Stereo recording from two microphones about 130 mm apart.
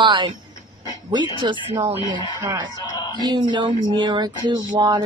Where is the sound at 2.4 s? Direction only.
25° right (ahead or behind).